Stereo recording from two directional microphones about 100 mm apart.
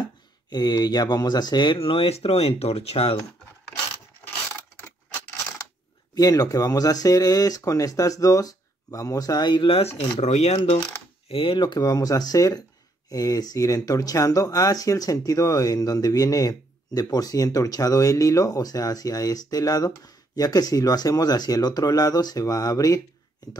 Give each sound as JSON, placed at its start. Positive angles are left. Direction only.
{"t": 0.0, "sound": "speech", "side_deg": 45}
{"t": 1.8, "sound": "speech", "side_deg": 70}
{"t": 6.1, "sound": "speech", "side_deg": 40}
{"t": 9.8, "sound": "speech", "side_deg": 90}
{"t": 11.2, "sound": "speech", "side_deg": 65}